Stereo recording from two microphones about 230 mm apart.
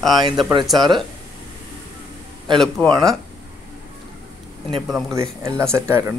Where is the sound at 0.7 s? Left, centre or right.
Centre.